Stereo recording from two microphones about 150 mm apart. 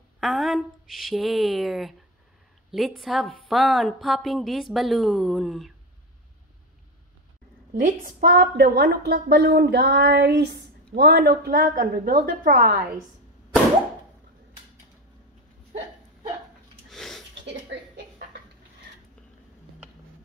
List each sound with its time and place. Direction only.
0.2 s a woman's voice: centre (ahead or behind)
7.7 s a woman's voice: 60° right (ahead or behind); by 12.8 s 80° right
16.9 s a sound: 5° left (ahead or behind)